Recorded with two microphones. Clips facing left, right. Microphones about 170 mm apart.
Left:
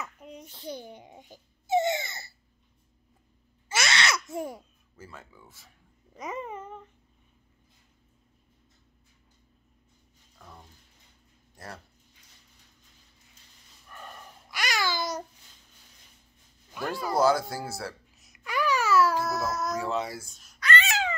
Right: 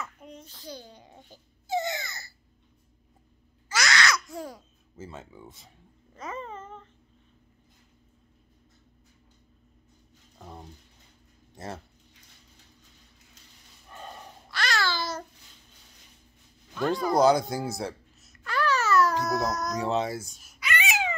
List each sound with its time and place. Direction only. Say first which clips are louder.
0.4 s baby cry: left 5 dB; 20° left (ahead or behind)
3.6 s gasp: right 2 dB; 25° left (ahead or behind)
4.9 s speech: right 5 dB; 20° right (ahead or behind)
6.1 s babbling: left 2 dB; 15° left (ahead or behind)
10.4 s a sound: right 6 dB; 30° right (ahead or behind)
11.5 s speech: right 5 dB; 25° right (ahead or behind)
13.8 s dog: right 3 dB; 20° right (ahead or behind)
14.5 s babbling: right 1 dB; 15° left (ahead or behind)
16.7 s speech: right 5 dB; 5° left (ahead or behind)
17.2 s speech: right 2 dB; 20° right (ahead or behind)
18.2 s babbling: right 1 dB; 15° left (ahead or behind)
19.8 s speech: right 3 dB; 20° right (ahead or behind)
20.3 s babbling: right 2 dB; 5° right (ahead or behind)
20.6 s a sound: left 2 dB; 15° right (ahead or behind)